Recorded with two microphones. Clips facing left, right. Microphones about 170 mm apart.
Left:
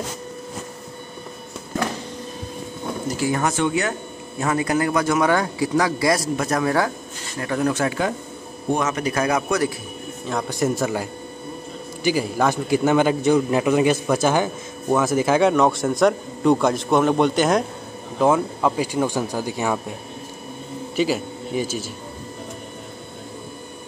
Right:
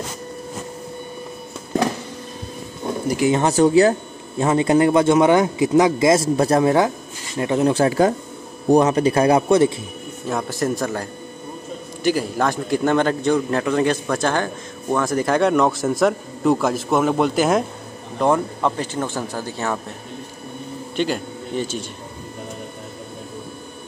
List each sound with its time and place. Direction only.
3.1 s a man's voice: 20° right (ahead or behind)
3.5 s a man's voice: 35° right (ahead or behind)
10.3 s a man's voice: centre (ahead or behind)
20.9 s speech: 5° left (ahead or behind)